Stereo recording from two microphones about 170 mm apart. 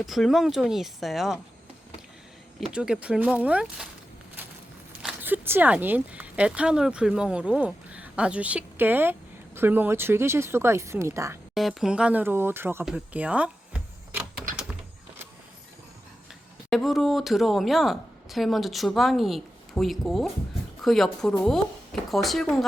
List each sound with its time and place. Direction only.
0.0 s a woman's voice: centre (ahead or behind)
2.6 s a woman's voice: 5° right (ahead or behind)
5.0 s speech: 10° right (ahead or behind)
11.5 s speech: centre (ahead or behind)
12.8 s a sound: 5° right (ahead or behind)
16.6 s a woman's voice: centre (ahead or behind)